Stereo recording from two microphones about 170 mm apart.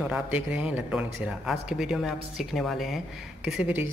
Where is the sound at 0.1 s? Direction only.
10° right (ahead or behind).